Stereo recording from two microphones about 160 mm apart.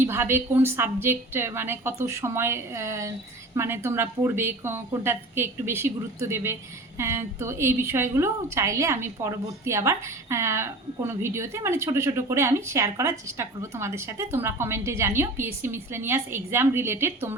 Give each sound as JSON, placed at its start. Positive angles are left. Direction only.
{"t": 0.0, "sound": "a woman's voice", "side_deg": -15}